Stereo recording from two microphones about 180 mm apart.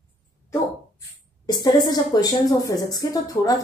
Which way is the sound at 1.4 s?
25° left (ahead or behind).